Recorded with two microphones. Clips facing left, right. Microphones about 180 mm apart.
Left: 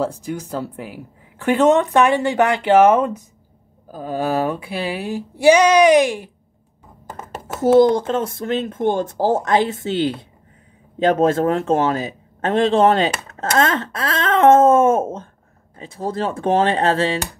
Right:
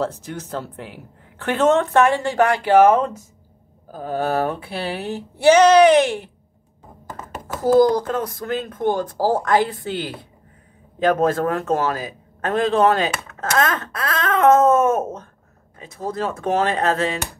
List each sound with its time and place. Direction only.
0.0 s speech: 10° left (ahead or behind)
7.8 s a man's voice: 25° left (ahead or behind)